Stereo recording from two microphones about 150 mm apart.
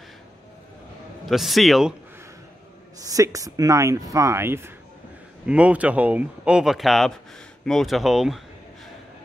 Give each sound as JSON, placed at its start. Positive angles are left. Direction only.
{"t": 1.3, "sound": "speech", "side_deg": 0}
{"t": 3.0, "sound": "speech", "side_deg": -25}